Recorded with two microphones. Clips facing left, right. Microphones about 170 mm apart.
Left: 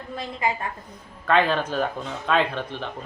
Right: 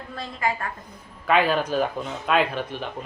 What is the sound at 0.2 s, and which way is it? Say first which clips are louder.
Speech: even; 20° left (ahead or behind).